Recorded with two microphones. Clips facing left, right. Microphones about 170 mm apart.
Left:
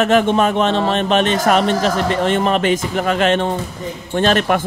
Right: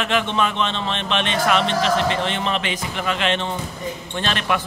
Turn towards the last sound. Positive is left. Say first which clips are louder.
# left 8 dB
turn(degrees=45)  # may be behind; listen again after turning